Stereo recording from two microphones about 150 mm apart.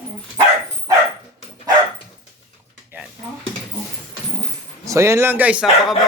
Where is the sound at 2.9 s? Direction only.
10° right (ahead or behind).